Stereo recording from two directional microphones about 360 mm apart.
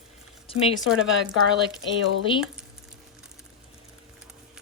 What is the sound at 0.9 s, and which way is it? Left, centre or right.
Speech, centre.